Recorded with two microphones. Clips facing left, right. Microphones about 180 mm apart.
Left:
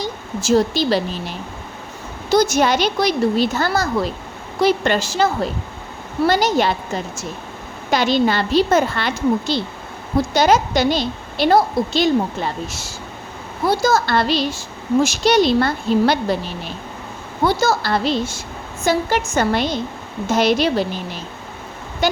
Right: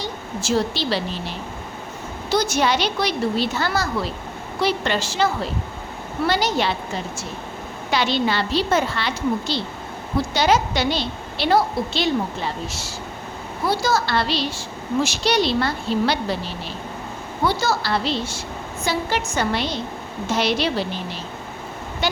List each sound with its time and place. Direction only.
0.0 s a woman's voice: 45° left (ahead or behind)
2.3 s a woman's voice: 45° left (ahead or behind)
7.9 s a woman's voice: 45° left (ahead or behind)
17.4 s a woman's voice: 45° left (ahead or behind)
22.0 s speech: 45° left (ahead or behind)